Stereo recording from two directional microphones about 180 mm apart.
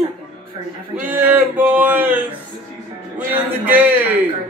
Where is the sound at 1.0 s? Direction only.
10° right (ahead or behind).